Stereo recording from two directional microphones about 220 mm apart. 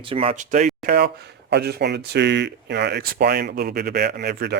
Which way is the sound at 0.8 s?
50° right (ahead or behind).